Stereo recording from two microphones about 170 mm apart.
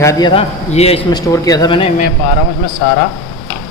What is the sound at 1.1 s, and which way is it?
Speech, 20° left (ahead or behind).